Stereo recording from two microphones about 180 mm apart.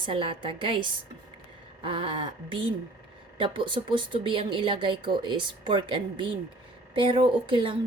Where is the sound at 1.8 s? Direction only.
30° right (ahead or behind).